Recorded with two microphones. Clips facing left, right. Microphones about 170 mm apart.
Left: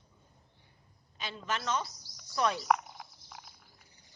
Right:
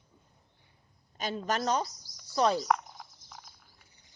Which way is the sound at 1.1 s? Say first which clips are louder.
Right 5 dB; 45° right (ahead or behind).